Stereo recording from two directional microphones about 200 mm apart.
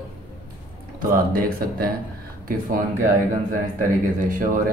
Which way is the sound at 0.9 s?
45° right (ahead or behind).